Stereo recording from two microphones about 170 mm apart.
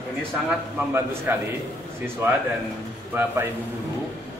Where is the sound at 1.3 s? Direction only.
15° right (ahead or behind).